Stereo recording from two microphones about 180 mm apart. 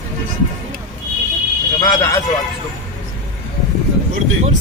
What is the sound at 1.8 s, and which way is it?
Speech, 15° left (ahead or behind).